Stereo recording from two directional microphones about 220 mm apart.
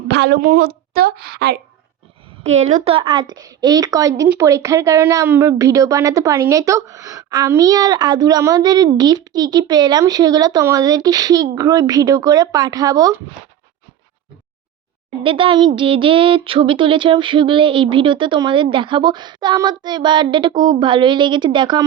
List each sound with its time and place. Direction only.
0.1 s a woman's voice: 50° right (ahead or behind)
2.4 s a woman's voice: 30° right (ahead or behind)
15.2 s speech: 25° right (ahead or behind)